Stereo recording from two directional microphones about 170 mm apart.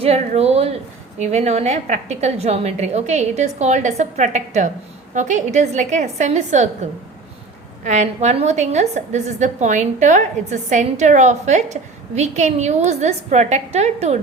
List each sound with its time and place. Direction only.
0.0 s a woman's voice: 40° right (ahead or behind)
7.9 s a woman's voice: 45° right (ahead or behind)